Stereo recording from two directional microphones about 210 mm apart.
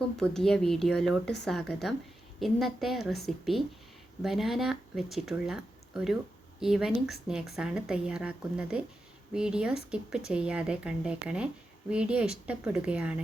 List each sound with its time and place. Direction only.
0.2 s a woman's voice: centre (ahead or behind)
2.4 s a woman's voice: centre (ahead or behind)